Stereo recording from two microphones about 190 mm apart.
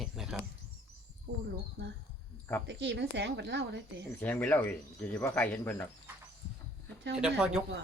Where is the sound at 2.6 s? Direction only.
65° right (ahead or behind).